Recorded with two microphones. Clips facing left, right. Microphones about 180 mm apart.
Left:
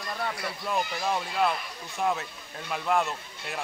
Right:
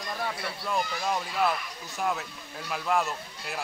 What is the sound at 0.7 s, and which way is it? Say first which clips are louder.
Speech: left 1 dB; 5° left (ahead or behind).